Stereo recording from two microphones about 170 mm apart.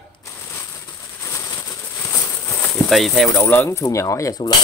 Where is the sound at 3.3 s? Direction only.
10° left (ahead or behind).